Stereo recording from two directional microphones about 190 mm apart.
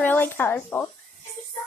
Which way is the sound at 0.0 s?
10° left (ahead or behind).